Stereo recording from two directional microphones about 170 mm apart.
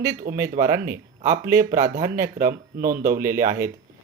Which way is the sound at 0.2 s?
55° right (ahead or behind).